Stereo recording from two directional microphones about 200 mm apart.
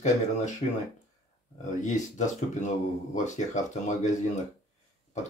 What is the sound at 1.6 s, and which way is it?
Speech, 35° left (ahead or behind).